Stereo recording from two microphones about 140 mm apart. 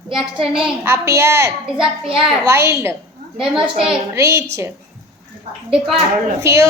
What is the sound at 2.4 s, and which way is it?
Speech, 20° right (ahead or behind).